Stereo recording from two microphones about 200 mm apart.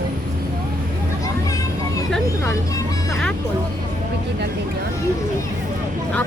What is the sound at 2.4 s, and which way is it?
Speech, 15° left (ahead or behind).